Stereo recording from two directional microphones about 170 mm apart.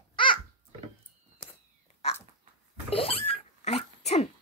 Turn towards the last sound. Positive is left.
turn(degrees=40)  # may be behind; listen again after turning